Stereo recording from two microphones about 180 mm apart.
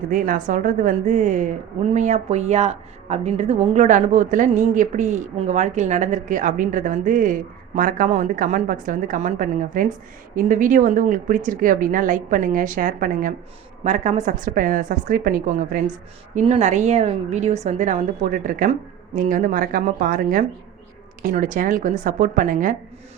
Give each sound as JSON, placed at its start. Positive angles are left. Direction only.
{"t": 0.1, "sound": "speech", "side_deg": -45}